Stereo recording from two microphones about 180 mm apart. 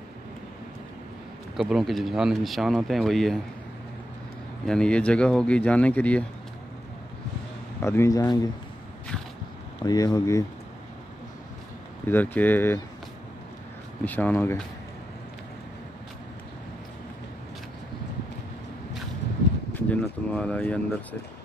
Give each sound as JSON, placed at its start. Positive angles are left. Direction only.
{"t": 1.6, "sound": "speech", "side_deg": 0}
{"t": 4.6, "sound": "speech", "side_deg": 5}
{"t": 7.8, "sound": "speech", "side_deg": 15}
{"t": 9.8, "sound": "speech", "side_deg": 20}
{"t": 12.1, "sound": "speech", "side_deg": 10}
{"t": 14.0, "sound": "speech", "side_deg": 10}
{"t": 19.7, "sound": "a sound", "side_deg": 5}